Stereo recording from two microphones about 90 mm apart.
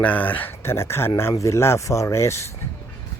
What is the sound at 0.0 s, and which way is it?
Speech, 20° left (ahead or behind).